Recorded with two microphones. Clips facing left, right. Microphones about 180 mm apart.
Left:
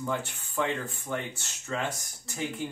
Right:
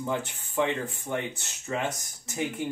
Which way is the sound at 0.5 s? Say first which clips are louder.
Right 3 dB; 20° right (ahead or behind).